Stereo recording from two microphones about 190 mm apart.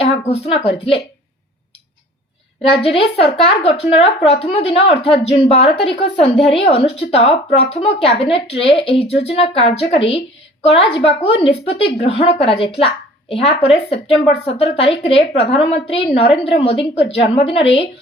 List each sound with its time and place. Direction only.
0.0 s speech: 30° left (ahead or behind)
2.8 s a woman's voice: 30° left (ahead or behind)
6.3 s a woman's voice: centre (ahead or behind)
6.6 s a woman's voice: 30° left (ahead or behind)